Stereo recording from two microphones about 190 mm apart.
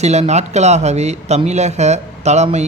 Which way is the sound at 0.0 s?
35° right (ahead or behind).